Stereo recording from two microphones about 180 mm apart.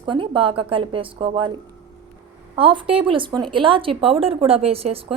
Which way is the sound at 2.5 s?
30° right (ahead or behind).